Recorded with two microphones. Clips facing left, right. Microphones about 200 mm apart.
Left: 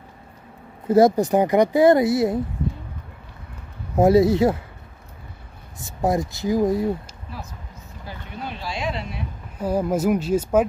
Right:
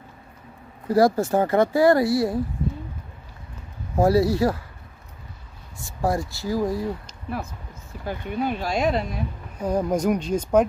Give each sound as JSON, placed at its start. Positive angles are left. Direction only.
{"t": 0.8, "sound": "speech", "side_deg": 20}
{"t": 3.9, "sound": "speech", "side_deg": 20}
{"t": 5.8, "sound": "speech", "side_deg": 20}
{"t": 8.1, "sound": "speech", "side_deg": -50}
{"t": 9.6, "sound": "speech", "side_deg": 5}